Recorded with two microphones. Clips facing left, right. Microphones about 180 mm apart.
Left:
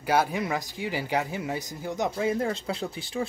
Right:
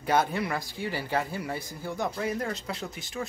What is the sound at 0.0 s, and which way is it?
Speech, 10° left (ahead or behind).